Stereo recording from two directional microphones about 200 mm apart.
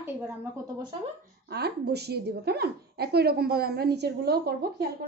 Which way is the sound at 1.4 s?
55° right (ahead or behind).